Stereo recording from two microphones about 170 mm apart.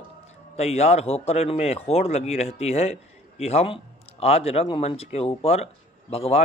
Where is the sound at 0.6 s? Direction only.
40° left (ahead or behind).